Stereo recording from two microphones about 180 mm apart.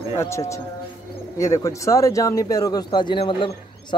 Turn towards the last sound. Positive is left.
turn(degrees=30)  # may be behind; listen again after turning